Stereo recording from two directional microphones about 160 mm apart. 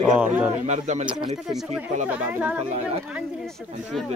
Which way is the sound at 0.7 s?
45° right (ahead or behind).